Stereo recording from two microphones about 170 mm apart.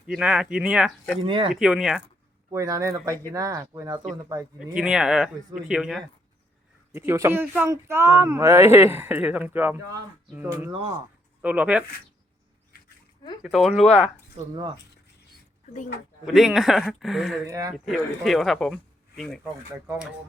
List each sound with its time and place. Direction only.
0.1 s speech: 5° right (ahead or behind)
1.2 s speech: 30° right (ahead or behind)
1.5 s speech: 5° right (ahead or behind)
2.5 s speech: 15° right (ahead or behind)
4.6 s speech: 5° right (ahead or behind)
6.9 s speech: 15° right (ahead or behind)
12.7 s a sound: 65° left (ahead or behind)
13.4 s speech: centre (ahead or behind)
14.4 s speech: 40° right (ahead or behind)
15.6 s speech: 45° left (ahead or behind)
16.2 s speech: centre (ahead or behind)
17.4 s speech: 20° right (ahead or behind)
17.8 s speech: centre (ahead or behind)